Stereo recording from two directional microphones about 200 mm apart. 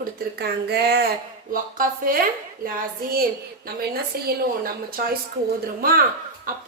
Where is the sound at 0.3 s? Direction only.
55° right (ahead or behind).